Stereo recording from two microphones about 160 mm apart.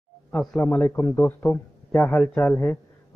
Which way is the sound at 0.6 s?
15° left (ahead or behind).